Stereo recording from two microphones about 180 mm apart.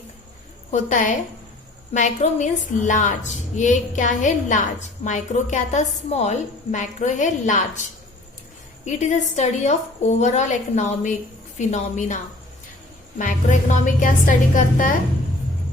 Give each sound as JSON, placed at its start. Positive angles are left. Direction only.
{"t": 0.7, "sound": "a woman's voice", "side_deg": 45}